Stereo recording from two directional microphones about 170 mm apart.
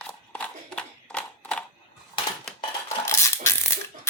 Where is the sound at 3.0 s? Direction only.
15° left (ahead or behind).